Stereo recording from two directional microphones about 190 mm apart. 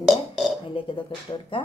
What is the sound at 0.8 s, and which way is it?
Speech, 30° left (ahead or behind).